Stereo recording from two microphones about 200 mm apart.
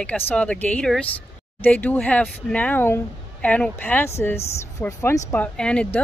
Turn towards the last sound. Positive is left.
turn(degrees=5)  # may be behind; listen again after turning